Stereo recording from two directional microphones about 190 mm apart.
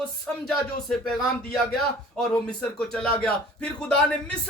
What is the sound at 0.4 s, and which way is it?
Speech, 5° left (ahead or behind).